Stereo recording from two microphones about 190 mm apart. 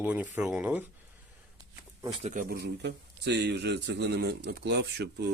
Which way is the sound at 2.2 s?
45° right (ahead or behind).